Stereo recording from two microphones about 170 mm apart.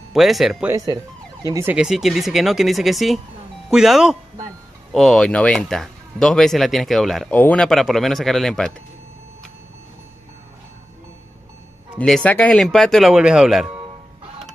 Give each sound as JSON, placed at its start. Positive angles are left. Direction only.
{"t": 0.1, "sound": "speech", "side_deg": 0}
{"t": 0.7, "sound": "speech", "side_deg": -20}
{"t": 12.0, "sound": "speech", "side_deg": 5}